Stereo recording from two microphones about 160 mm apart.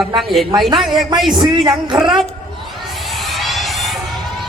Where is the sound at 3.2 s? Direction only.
Centre (ahead or behind).